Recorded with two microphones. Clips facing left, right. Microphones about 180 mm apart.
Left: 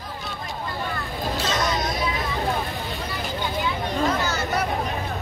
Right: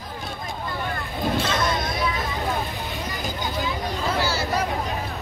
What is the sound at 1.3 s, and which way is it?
Vehicle, 55° right (ahead or behind).